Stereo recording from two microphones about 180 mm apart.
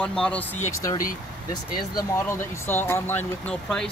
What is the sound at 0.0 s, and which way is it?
Speech, 5° left (ahead or behind).